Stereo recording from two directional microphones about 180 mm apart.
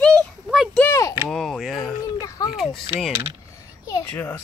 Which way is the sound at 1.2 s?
Centre (ahead or behind).